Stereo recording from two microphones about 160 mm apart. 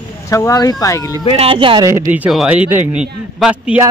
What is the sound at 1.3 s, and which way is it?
Speech, 35° right (ahead or behind).